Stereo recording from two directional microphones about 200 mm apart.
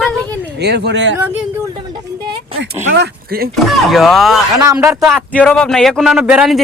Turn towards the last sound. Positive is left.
turn(degrees=-5)  # may be behind; listen again after turning